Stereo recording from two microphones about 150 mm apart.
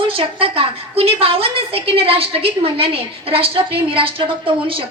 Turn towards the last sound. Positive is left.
turn(degrees=-35)  # may be behind; listen again after turning